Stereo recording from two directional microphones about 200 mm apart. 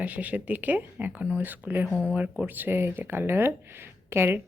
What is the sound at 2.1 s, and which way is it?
Speech, 5° right (ahead or behind).